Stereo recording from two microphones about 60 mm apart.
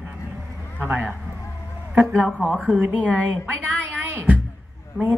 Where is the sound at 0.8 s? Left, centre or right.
Right.